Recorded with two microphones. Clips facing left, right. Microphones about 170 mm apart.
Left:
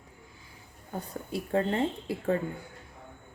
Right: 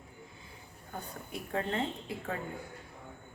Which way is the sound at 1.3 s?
35° left (ahead or behind).